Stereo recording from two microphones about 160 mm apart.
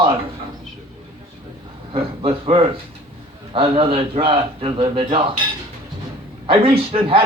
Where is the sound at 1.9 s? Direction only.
35° right (ahead or behind).